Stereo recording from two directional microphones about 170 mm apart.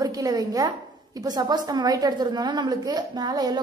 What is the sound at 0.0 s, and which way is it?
A woman's voice, 20° right (ahead or behind).